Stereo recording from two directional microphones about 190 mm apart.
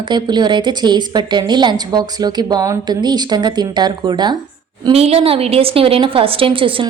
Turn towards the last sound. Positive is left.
turn(degrees=-25)  # may be behind; listen again after turning